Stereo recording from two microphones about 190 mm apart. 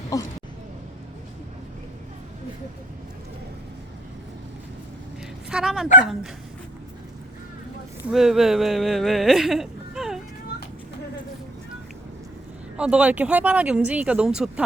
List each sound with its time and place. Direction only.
0.1 s a sound: 20° left (ahead or behind)
5.5 s speech: 5° right (ahead or behind)
8.0 s speech: centre (ahead or behind)
12.7 s speech: 5° right (ahead or behind)